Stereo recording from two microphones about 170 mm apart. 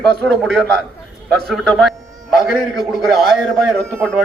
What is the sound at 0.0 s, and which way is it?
A man's voice, 5° left (ahead or behind).